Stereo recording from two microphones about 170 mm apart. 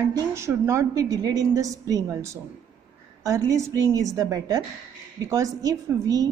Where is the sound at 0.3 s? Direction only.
15° right (ahead or behind).